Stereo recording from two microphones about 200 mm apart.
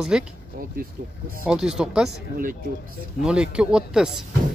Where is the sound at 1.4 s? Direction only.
5° right (ahead or behind).